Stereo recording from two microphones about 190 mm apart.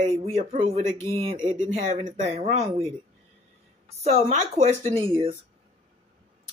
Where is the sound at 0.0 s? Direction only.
35° right (ahead or behind).